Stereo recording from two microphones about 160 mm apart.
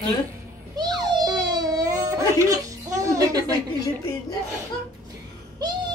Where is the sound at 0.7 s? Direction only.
25° right (ahead or behind).